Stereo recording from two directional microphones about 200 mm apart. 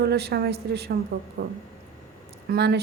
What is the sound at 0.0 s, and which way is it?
A woman's voice, 55° right (ahead or behind).